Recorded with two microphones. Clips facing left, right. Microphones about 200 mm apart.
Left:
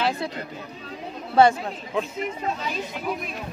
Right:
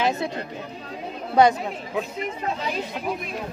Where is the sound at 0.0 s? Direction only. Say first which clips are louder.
Right 2 dB; 25° right (ahead or behind).